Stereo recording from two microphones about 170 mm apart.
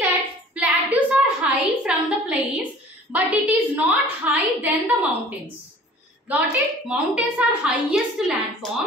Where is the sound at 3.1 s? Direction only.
10° right (ahead or behind).